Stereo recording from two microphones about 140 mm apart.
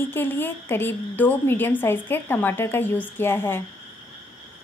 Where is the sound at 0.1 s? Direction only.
15° left (ahead or behind).